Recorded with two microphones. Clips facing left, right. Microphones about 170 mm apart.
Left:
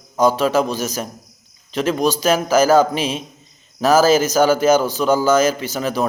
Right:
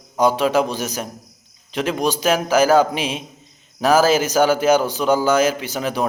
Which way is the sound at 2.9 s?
40° left (ahead or behind).